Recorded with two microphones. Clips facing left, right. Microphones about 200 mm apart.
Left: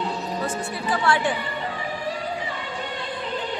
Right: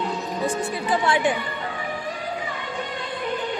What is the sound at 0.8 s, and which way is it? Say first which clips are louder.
Speech: right 1 dB; 20° right (ahead or behind).